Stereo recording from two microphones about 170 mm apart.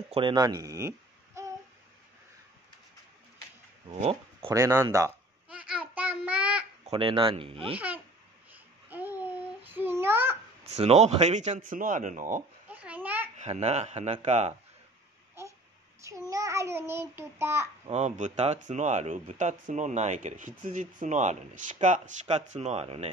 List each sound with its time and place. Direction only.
0.1 s speech: 30° right (ahead or behind)
3.9 s speech: 35° right (ahead or behind)
4.5 s speech: 20° right (ahead or behind)
5.5 s child singing: 10° right (ahead or behind)
6.9 s speech: 30° right (ahead or behind)
8.5 s babbling: 10° right (ahead or behind)
10.7 s speech: 40° right (ahead or behind)
12.6 s a sound: 10° right (ahead or behind)
13.4 s speech: 40° right (ahead or behind)
15.4 s babbling: 15° right (ahead or behind)
16.3 s child singing: 20° right (ahead or behind)
17.8 s speech: 40° right (ahead or behind)